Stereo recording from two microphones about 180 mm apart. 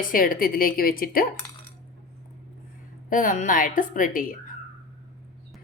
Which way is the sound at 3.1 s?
45° left (ahead or behind).